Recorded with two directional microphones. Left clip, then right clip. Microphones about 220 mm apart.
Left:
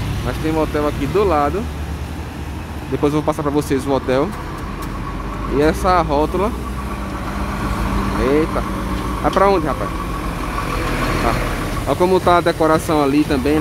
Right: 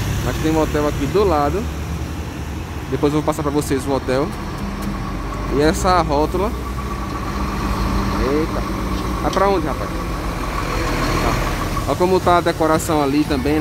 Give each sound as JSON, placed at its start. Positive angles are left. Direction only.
{"t": 0.6, "sound": "speech", "side_deg": 0}
{"t": 3.0, "sound": "speech", "side_deg": 5}
{"t": 5.6, "sound": "speech", "side_deg": 5}
{"t": 8.2, "sound": "speech", "side_deg": 25}
{"t": 10.9, "sound": "vehicle", "side_deg": 45}
{"t": 11.9, "sound": "speech", "side_deg": 5}